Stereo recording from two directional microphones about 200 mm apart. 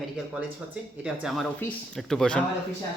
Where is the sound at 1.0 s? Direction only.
Centre (ahead or behind).